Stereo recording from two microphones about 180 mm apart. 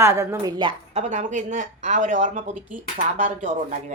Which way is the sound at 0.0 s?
15° right (ahead or behind).